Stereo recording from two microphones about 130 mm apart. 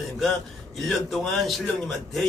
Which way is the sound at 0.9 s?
Centre (ahead or behind).